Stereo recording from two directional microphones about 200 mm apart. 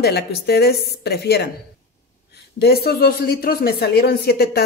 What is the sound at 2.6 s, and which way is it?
Speech, 50° left (ahead or behind).